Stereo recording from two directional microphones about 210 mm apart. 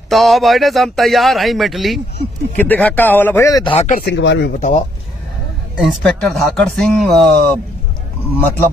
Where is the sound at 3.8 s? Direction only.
35° left (ahead or behind).